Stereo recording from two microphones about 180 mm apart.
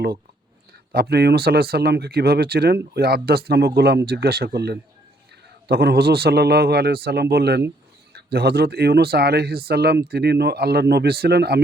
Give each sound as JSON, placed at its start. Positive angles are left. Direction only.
{"t": 0.9, "sound": "speech", "side_deg": -65}